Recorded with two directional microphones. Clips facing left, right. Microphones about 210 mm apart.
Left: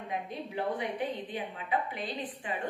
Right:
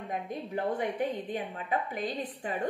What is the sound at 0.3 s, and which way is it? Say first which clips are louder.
A woman's voice: right 3 dB; 45° right (ahead or behind).